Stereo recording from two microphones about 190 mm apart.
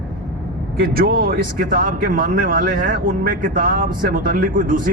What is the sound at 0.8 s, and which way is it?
Speech, 50° right (ahead or behind).